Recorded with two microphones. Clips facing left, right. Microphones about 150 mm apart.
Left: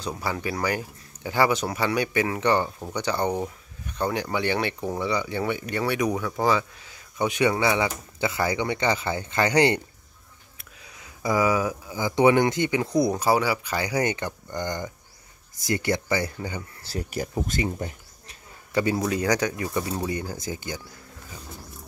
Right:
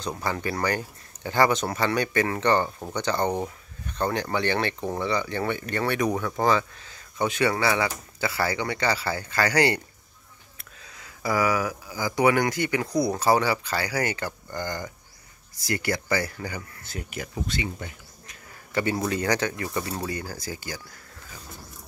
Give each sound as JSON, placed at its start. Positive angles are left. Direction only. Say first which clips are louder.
{"t": 0.0, "sound": "speech", "louder": "even", "side_deg": 10}
{"t": 16.8, "sound": "speech", "louder": "left 5 dB", "side_deg": 35}
{"t": 18.7, "sound": "speech", "louder": "left 2 dB", "side_deg": 15}